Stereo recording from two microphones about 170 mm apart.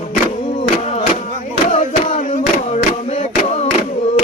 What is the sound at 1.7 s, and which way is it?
Music, 40° left (ahead or behind).